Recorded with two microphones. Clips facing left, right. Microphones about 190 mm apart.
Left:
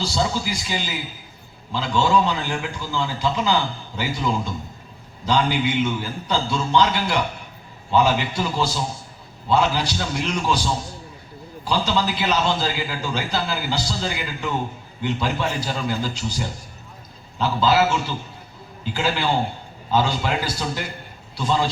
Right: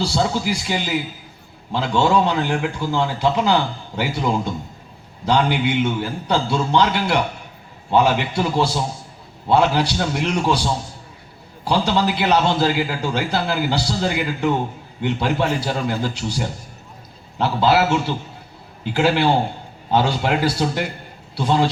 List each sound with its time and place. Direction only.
0.0 s a man's voice: 60° right (ahead or behind)